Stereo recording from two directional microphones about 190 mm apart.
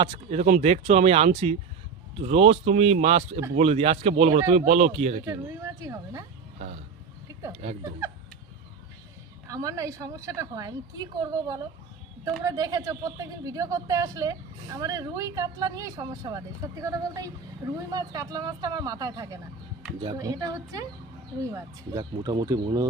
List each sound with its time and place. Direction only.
0.1 s speech: 35° right (ahead or behind)
5.2 s speech: 15° right (ahead or behind)
7.6 s speech: 35° right (ahead or behind)
9.5 s speech: 20° right (ahead or behind)